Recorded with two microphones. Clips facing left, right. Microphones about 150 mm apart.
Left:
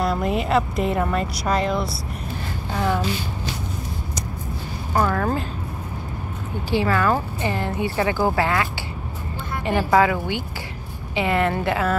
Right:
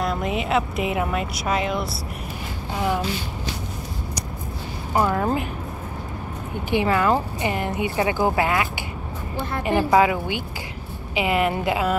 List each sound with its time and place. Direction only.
0.0 s speech: centre (ahead or behind)
2.7 s speech: 15° right (ahead or behind)
4.9 s speech: 20° right (ahead or behind)
6.7 s speech: 20° right (ahead or behind)
9.7 s speech: 15° right (ahead or behind)